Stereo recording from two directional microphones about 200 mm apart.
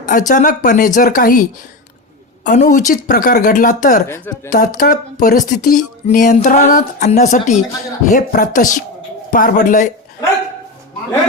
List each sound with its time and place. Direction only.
0.0 s speech: 40° left (ahead or behind)
4.1 s speech: 20° left (ahead or behind)
4.5 s speech: 40° left (ahead or behind)